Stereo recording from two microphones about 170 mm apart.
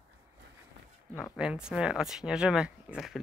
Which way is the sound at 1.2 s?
5° right (ahead or behind).